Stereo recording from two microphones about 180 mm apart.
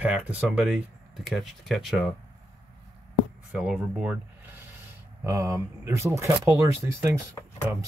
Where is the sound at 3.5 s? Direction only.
5° right (ahead or behind).